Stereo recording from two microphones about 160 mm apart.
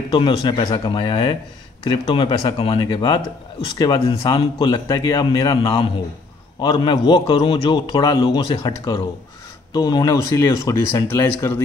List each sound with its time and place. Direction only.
0.1 s a man's voice: 25° left (ahead or behind)